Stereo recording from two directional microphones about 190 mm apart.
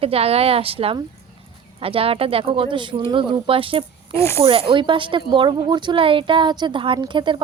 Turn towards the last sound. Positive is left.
turn(degrees=-25)  # may be behind; listen again after turning